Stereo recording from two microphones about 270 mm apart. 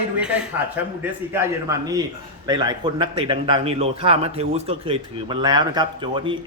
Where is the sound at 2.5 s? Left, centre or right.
Centre.